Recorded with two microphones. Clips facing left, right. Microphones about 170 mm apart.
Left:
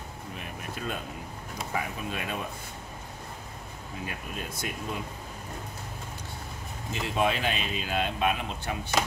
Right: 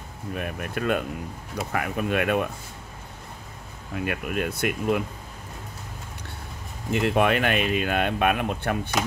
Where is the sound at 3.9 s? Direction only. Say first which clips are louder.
Right 10 dB; 70° right (ahead or behind).